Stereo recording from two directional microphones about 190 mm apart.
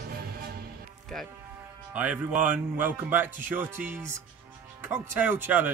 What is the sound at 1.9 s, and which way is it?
Speech, 5° right (ahead or behind).